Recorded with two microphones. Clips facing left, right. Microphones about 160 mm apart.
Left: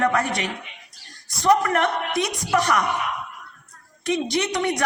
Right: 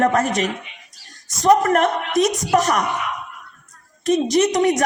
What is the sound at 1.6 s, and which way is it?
A man's voice, 45° right (ahead or behind).